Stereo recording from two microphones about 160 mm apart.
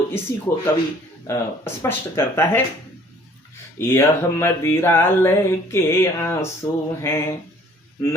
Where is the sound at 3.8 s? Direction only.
15° left (ahead or behind).